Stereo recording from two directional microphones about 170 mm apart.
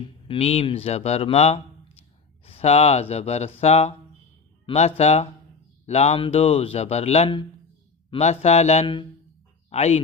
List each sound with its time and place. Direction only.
0.0 s speech: 35° left (ahead or behind)